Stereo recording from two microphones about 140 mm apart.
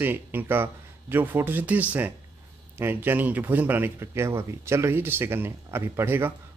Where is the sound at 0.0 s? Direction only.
15° right (ahead or behind).